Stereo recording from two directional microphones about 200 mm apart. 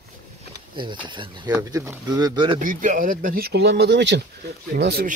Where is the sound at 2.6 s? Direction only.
40° right (ahead or behind).